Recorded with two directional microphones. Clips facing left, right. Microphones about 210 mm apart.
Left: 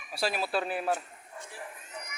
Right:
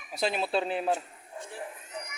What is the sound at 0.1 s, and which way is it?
Speech, 20° right (ahead or behind).